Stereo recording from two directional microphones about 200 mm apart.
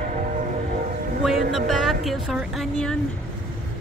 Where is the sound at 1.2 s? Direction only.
Centre (ahead or behind).